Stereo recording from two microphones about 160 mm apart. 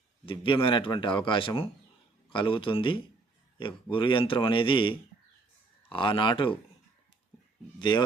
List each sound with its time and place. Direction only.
0.3 s speech: 30° left (ahead or behind)
7.8 s a man's voice: 30° left (ahead or behind)